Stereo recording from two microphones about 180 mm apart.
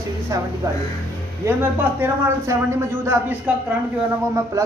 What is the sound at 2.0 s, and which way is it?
Speech, 15° right (ahead or behind).